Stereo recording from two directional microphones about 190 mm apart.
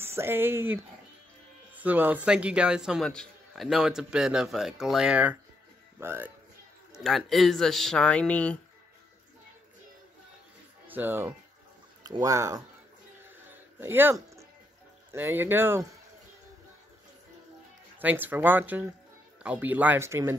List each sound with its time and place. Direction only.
0.0 s a man's voice: 15° right (ahead or behind)
7.0 s a man's voice: centre (ahead or behind)
10.9 s speech: 10° right (ahead or behind)
13.7 s speech: 10° right (ahead or behind)
17.9 s speech: 10° right (ahead or behind)